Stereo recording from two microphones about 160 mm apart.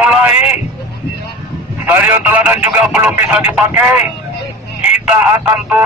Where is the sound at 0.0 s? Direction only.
10° right (ahead or behind).